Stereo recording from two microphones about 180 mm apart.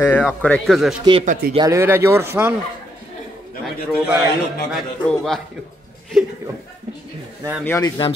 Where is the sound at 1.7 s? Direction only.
15° right (ahead or behind).